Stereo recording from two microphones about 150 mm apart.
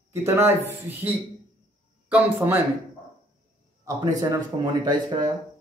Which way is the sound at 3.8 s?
25° right (ahead or behind).